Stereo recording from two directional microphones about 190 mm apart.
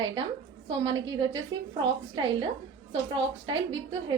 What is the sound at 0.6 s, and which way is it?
Speech, 25° right (ahead or behind).